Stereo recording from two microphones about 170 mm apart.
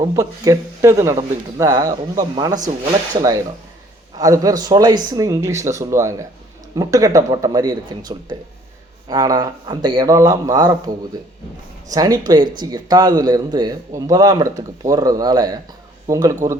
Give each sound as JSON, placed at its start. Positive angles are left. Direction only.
{"t": 0.0, "sound": "a man's voice", "side_deg": -20}